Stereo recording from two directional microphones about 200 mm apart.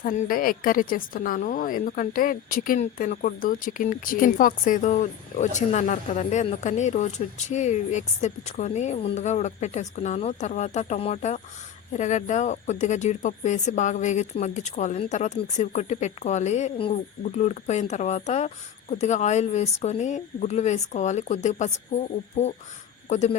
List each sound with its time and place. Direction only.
0.0 s a woman's voice: 45° left (ahead or behind)
23.0 s speech: 35° left (ahead or behind)